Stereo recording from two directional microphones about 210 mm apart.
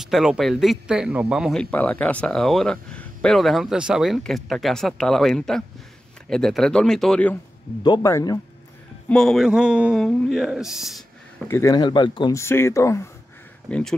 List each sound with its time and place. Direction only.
0.0 s speech: centre (ahead or behind)
7.8 s speech: 20° left (ahead or behind)
9.1 s speech: centre (ahead or behind)
11.4 s speech: 15° left (ahead or behind)